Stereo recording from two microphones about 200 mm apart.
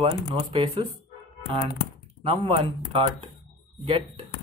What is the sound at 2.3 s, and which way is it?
Speech, 25° right (ahead or behind).